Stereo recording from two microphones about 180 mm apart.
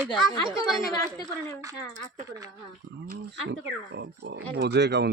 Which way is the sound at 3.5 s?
80° right.